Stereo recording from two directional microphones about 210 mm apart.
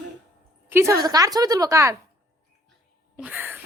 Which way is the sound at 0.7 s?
15° right (ahead or behind).